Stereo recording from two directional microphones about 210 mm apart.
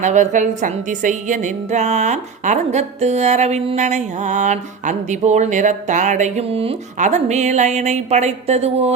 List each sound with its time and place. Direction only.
0.0 s a woman's voice: 35° right (ahead or behind)